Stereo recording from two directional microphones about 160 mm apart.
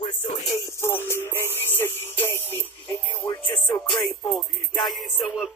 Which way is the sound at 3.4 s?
30° left (ahead or behind).